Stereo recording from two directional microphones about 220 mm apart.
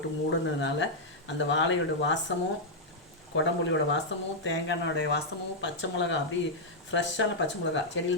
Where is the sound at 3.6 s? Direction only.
55° left (ahead or behind).